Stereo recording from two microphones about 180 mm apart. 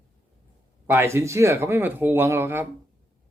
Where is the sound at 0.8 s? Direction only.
15° right (ahead or behind).